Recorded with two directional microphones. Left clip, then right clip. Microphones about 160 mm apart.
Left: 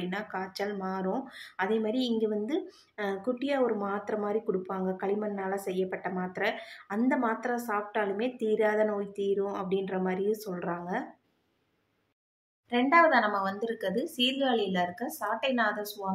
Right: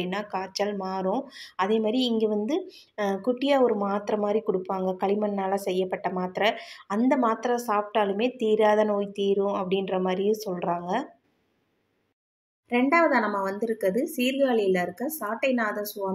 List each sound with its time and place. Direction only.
0.0 s a woman's voice: 15° right (ahead or behind)
12.6 s a woman's voice: 15° right (ahead or behind)